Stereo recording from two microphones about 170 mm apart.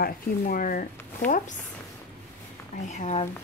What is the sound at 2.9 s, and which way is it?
Speech, 40° left (ahead or behind).